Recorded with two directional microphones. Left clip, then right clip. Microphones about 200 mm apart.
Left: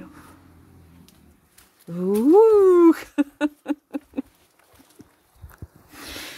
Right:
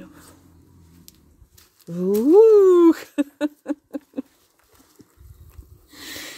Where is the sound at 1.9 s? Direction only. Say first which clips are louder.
Right 1 dB; centre (ahead or behind).